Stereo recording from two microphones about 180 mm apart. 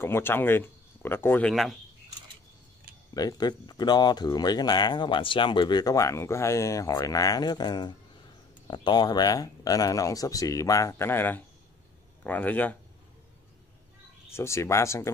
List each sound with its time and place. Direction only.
0.0 s speech: 15° left (ahead or behind)
1.5 s speech: centre (ahead or behind)
3.2 s speech: 20° left (ahead or behind)
14.3 s speech: 15° left (ahead or behind)